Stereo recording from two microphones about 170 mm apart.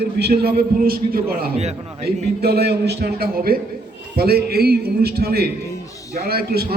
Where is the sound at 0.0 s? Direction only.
70° right (ahead or behind).